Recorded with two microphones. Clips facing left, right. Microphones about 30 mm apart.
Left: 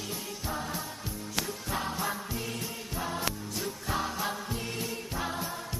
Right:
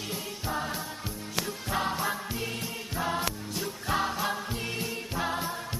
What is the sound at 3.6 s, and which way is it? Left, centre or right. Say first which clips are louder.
Music: right 4 dB; centre.